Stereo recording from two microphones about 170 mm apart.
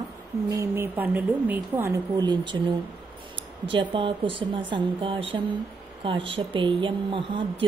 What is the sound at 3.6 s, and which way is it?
Speech, 30° right (ahead or behind).